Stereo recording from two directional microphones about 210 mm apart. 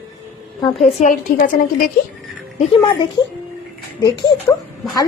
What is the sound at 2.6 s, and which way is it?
Speech, 25° left (ahead or behind).